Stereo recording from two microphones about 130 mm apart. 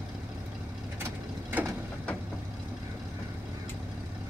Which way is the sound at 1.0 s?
20° right (ahead or behind).